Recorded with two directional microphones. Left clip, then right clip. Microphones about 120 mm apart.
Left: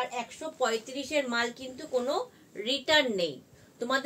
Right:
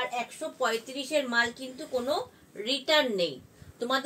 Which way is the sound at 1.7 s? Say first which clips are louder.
Even; 10° left (ahead or behind).